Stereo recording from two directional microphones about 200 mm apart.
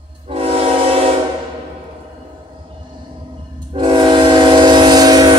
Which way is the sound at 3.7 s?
25° right (ahead or behind).